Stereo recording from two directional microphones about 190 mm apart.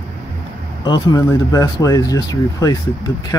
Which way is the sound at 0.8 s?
20° left (ahead or behind).